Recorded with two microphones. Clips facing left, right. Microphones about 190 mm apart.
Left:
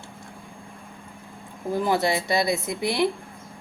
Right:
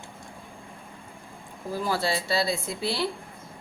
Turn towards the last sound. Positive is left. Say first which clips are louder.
# left 5 dB
turn(degrees=15)  # may be behind; listen again after turning